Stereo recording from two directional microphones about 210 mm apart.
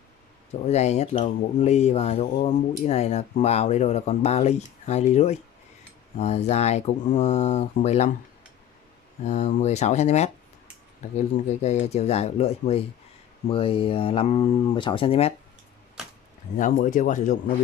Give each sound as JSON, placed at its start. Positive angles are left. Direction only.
{"t": 0.5, "sound": "speech", "side_deg": 30}
{"t": 9.2, "sound": "speech", "side_deg": 35}
{"t": 16.5, "sound": "speech", "side_deg": 40}